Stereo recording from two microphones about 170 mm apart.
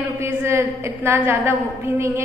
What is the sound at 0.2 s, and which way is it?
A woman's voice, 15° right (ahead or behind).